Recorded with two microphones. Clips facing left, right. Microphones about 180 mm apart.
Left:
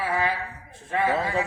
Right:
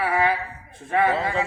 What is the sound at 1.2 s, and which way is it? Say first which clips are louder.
Speech: right 1 dB; centre (ahead or behind).